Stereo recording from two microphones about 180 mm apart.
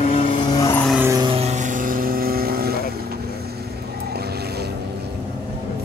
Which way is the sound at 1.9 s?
50° right (ahead or behind).